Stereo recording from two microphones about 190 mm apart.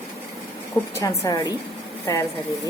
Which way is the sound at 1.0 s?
20° left (ahead or behind).